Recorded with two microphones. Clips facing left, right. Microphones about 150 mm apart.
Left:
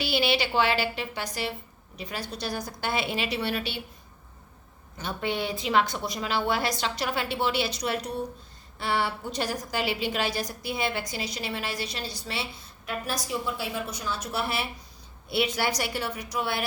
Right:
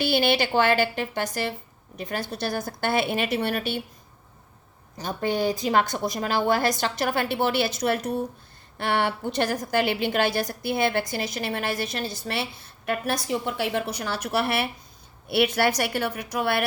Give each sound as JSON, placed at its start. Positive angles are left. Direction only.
{"t": 0.0, "sound": "a woman's voice", "side_deg": -50}
{"t": 4.9, "sound": "a woman's voice", "side_deg": -40}